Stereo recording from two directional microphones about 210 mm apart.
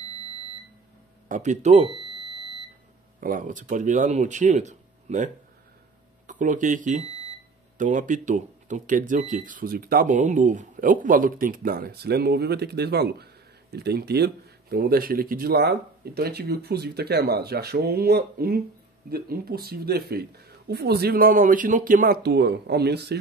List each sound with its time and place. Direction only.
1.3 s speech: 35° right (ahead or behind)
3.2 s speech: 40° right (ahead or behind)